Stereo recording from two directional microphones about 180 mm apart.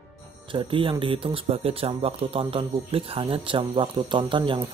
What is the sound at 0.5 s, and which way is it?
Speech, 30° right (ahead or behind).